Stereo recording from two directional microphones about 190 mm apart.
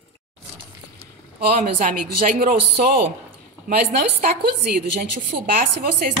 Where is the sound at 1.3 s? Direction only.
45° right (ahead or behind).